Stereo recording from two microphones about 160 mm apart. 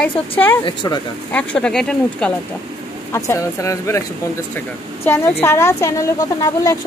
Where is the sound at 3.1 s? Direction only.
20° left (ahead or behind).